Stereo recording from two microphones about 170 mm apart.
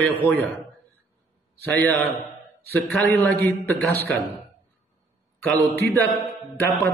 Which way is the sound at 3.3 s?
5° left (ahead or behind).